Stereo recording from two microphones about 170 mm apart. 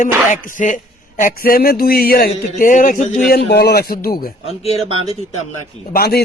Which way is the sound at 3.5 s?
70° left (ahead or behind).